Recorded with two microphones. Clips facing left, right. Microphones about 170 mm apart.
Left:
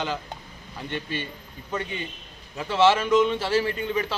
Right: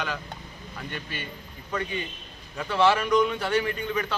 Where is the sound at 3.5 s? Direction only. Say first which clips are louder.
Left 2 dB; 30° left (ahead or behind).